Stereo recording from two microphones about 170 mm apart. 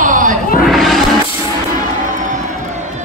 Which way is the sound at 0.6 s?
Centre (ahead or behind).